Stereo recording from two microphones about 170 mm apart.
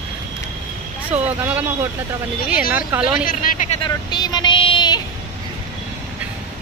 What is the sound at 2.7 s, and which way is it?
Speech, 5° right (ahead or behind).